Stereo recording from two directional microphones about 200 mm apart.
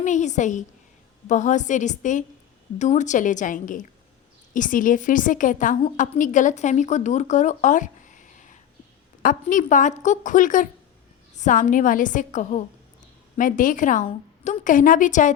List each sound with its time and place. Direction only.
0.0 s a woman's voice: 40° left (ahead or behind)